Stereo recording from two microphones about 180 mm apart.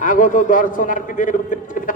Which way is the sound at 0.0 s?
45° left (ahead or behind).